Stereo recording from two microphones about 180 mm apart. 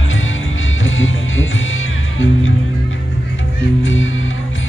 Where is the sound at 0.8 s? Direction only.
90° left.